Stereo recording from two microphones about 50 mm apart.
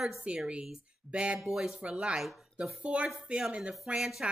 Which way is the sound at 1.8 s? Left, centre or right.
Centre.